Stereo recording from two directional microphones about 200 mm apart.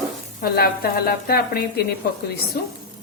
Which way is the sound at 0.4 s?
50° left (ahead or behind).